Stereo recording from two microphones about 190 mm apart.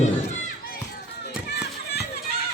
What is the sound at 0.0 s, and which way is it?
Run, 40° left (ahead or behind).